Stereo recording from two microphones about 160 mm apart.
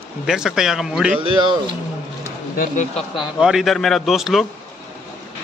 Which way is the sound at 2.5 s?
55° left (ahead or behind).